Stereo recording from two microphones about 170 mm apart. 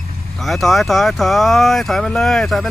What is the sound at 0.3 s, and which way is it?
Speech, centre (ahead or behind).